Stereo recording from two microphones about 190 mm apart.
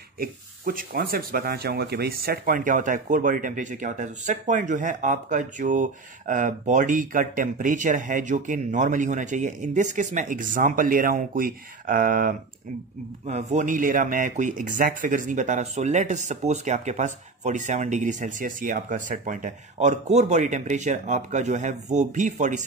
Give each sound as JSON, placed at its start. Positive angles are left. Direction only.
{"t": 0.2, "sound": "speech", "side_deg": -50}